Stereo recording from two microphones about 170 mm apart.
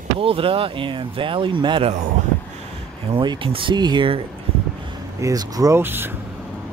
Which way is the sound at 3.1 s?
30° right (ahead or behind).